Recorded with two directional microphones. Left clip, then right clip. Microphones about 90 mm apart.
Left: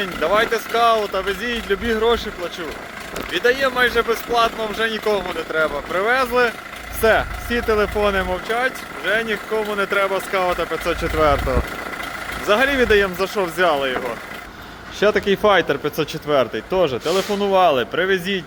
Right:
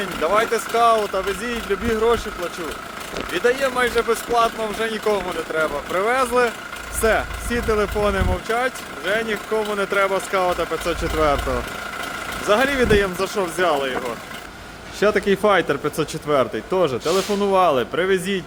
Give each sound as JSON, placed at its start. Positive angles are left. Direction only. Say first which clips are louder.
{"t": 0.0, "sound": "speech", "louder": "left 1 dB", "side_deg": -20}
{"t": 3.3, "sound": "speech", "louder": "left 2 dB", "side_deg": -20}
{"t": 5.6, "sound": "speech", "louder": "left 1 dB", "side_deg": -5}
{"t": 6.0, "sound": "speech", "louder": "left 1 dB", "side_deg": -20}
{"t": 15.0, "sound": "speech", "louder": "left 1 dB", "side_deg": -40}